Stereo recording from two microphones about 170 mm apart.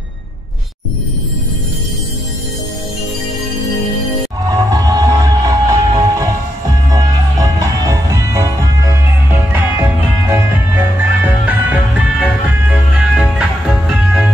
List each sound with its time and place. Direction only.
4.5 s music: 20° right (ahead or behind)
7.9 s music: 20° right (ahead or behind); by 14.3 s centre (ahead or behind)